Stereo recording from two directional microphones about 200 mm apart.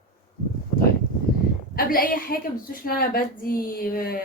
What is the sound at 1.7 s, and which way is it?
A woman's voice, 45° left (ahead or behind).